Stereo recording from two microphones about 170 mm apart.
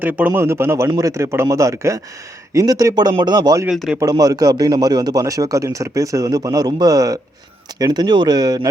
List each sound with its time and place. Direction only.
0.0 s a man's voice: 10° right (ahead or behind)
3.7 s a man's voice: 5° right (ahead or behind)
4.0 s a man's voice: 20° right (ahead or behind)